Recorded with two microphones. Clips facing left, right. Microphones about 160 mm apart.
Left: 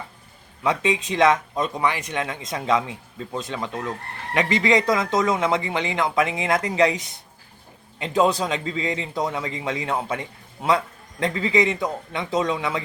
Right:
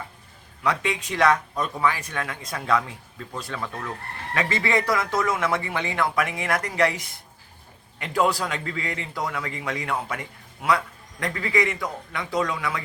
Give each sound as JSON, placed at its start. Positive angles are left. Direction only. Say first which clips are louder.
{"t": 0.6, "sound": "a man's voice", "louder": "left 3 dB", "side_deg": 20}